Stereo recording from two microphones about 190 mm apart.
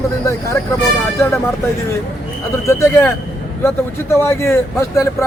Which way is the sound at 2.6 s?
15° left (ahead or behind).